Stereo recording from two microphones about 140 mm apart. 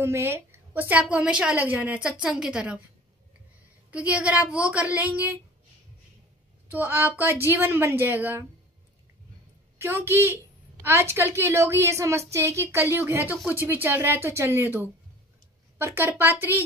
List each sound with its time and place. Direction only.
0.0 s a woman's voice: 15° right (ahead or behind)
3.9 s a woman's voice: 10° right (ahead or behind)
6.7 s a woman's voice: 15° right (ahead or behind)
9.8 s a woman's voice: 20° right (ahead or behind)